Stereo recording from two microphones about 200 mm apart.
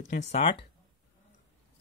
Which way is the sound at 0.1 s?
35° left (ahead or behind).